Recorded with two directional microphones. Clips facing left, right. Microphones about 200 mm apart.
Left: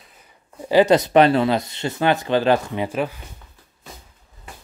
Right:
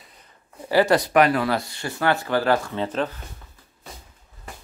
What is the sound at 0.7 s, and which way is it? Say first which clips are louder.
Speech: left 4 dB; 20° left (ahead or behind).